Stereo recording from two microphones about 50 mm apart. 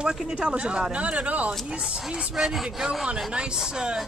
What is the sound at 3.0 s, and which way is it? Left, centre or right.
Speech, right.